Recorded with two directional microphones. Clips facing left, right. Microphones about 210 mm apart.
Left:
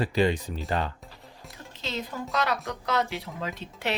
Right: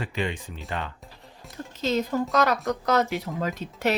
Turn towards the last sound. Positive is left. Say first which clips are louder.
# right 6 dB
turn(degrees=-45)  # may be behind; listen again after turning